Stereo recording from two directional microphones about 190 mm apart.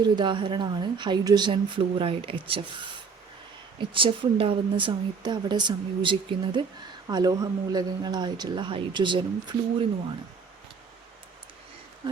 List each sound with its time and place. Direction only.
0.2 s speech: 25° right (ahead or behind)